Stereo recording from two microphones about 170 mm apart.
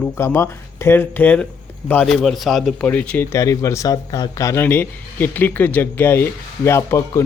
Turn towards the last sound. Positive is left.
turn(degrees=15)  # may be behind; listen again after turning